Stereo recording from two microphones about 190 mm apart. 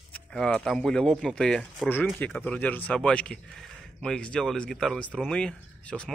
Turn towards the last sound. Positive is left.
turn(degrees=5)  # may be behind; listen again after turning